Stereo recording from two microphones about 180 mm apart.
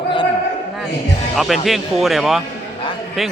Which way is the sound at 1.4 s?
Centre (ahead or behind).